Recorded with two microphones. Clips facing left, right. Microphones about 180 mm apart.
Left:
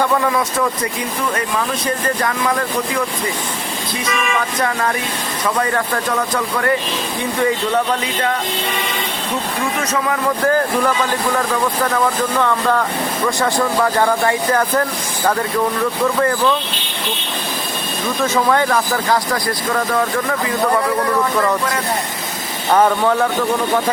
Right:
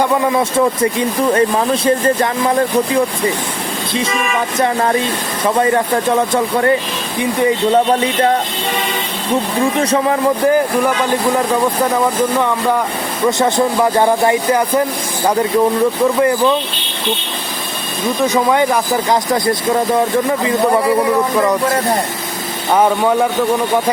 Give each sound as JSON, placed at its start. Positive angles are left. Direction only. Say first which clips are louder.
{"t": 0.0, "sound": "speech", "louder": "right 3 dB", "side_deg": -25}
{"t": 4.5, "sound": "speech", "louder": "right 5 dB", "side_deg": -25}
{"t": 9.8, "sound": "music", "louder": "right 5 dB", "side_deg": -35}
{"t": 10.4, "sound": "speech", "louder": "right 1 dB", "side_deg": -15}
{"t": 18.2, "sound": "speech", "louder": "right 2 dB", "side_deg": -15}
{"t": 22.7, "sound": "speech", "louder": "right 1 dB", "side_deg": -10}